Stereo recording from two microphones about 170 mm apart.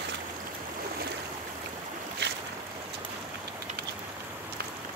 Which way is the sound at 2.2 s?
85° right.